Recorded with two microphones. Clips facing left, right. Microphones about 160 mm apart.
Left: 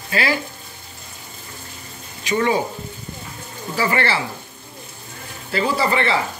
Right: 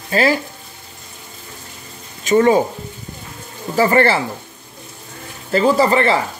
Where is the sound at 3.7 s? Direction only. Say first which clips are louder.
Right 7 dB; 45° right (ahead or behind).